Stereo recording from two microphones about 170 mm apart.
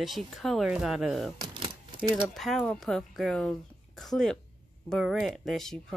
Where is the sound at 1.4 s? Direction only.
30° right (ahead or behind).